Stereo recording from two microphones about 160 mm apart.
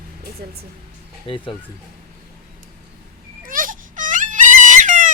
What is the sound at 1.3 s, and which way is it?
Speech, 35° left (ahead or behind).